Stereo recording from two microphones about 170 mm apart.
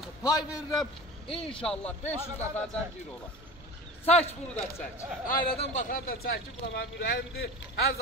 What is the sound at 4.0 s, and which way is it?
Speech, 40° left (ahead or behind).